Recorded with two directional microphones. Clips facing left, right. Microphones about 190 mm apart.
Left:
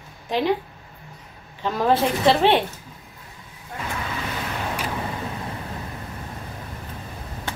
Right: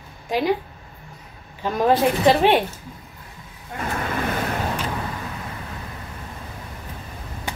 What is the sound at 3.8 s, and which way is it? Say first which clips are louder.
Vehicle: right 5 dB; 50° right (ahead or behind).